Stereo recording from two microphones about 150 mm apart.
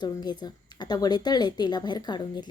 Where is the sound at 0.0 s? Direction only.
30° left (ahead or behind).